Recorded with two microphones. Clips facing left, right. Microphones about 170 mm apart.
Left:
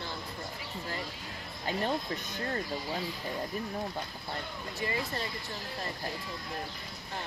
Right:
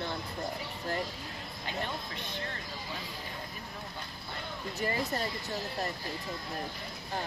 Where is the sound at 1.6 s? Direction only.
40° left (ahead or behind).